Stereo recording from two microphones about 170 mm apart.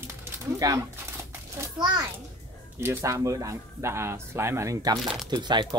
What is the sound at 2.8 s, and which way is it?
Speech, 15° right (ahead or behind).